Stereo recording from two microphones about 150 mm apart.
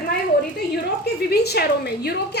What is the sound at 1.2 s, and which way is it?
A woman's voice, 90° left.